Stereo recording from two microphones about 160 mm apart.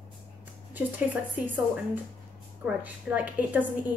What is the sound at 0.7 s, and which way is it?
Speech, 10° right (ahead or behind).